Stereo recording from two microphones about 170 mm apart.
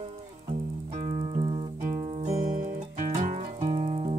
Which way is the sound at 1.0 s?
40° right (ahead or behind).